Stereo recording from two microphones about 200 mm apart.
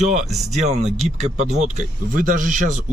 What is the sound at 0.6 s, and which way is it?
Speech, 35° right (ahead or behind).